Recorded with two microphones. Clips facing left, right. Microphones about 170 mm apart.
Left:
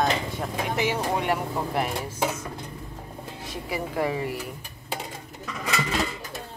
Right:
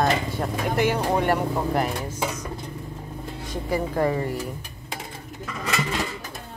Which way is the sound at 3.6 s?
5° left (ahead or behind).